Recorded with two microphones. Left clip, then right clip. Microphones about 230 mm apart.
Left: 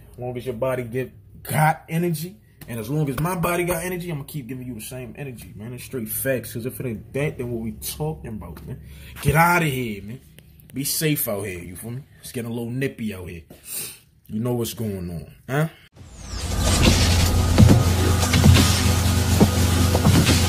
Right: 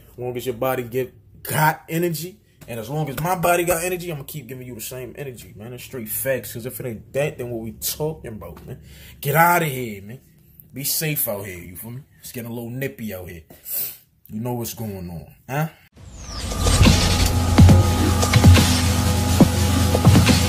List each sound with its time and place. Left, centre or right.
0.2 s speech: centre
5.6 s speech: centre
10.8 s speech: centre
16.2 s music: centre